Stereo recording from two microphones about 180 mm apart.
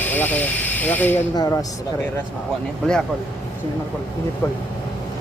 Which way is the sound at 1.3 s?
20° left (ahead or behind).